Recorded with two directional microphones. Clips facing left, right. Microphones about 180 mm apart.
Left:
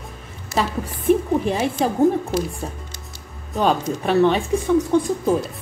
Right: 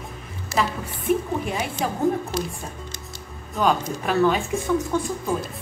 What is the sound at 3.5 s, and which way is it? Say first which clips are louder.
Speech: left 2 dB; 30° left (ahead or behind).